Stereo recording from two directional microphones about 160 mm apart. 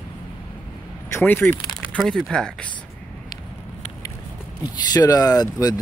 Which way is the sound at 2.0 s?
Centre (ahead or behind).